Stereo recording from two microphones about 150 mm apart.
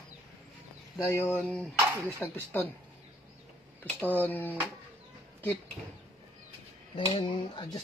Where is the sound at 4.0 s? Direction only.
10° left (ahead or behind).